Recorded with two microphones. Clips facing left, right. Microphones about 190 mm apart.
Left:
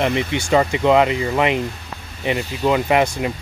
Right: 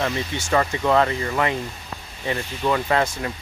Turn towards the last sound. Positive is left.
turn(degrees=15)  # may be behind; listen again after turning